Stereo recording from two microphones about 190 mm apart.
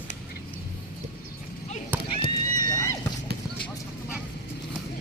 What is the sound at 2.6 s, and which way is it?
Horse, 20° left (ahead or behind).